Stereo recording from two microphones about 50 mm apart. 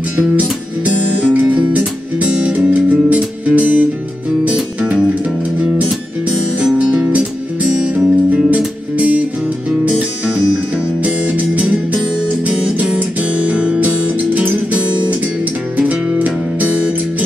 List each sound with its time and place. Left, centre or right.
0.4 s music: right
6.8 s music: centre
11.0 s music: right